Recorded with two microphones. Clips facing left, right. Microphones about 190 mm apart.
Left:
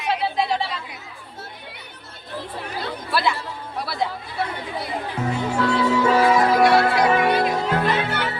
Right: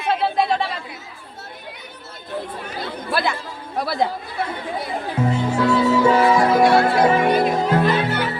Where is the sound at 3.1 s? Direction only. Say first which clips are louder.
Even; 50° right (ahead or behind).